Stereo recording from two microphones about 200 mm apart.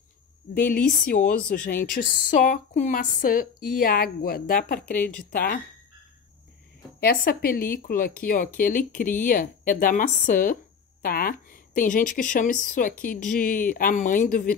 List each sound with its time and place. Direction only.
0.7 s speech: 45° left (ahead or behind)
4.7 s speech: 10° left (ahead or behind)
5.3 s speech: 50° left (ahead or behind)
7.0 s speech: 50° left (ahead or behind)